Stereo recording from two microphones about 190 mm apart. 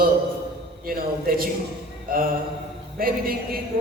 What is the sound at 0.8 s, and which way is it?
Speech, 50° right (ahead or behind).